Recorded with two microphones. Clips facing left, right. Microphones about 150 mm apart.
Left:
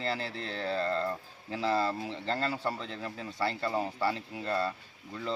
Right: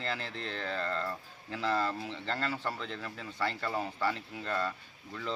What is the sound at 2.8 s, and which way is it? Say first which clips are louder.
A man's voice: left 2 dB; 35° left (ahead or behind).